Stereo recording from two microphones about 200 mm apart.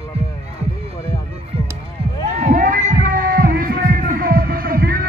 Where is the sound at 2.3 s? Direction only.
40° right (ahead or behind).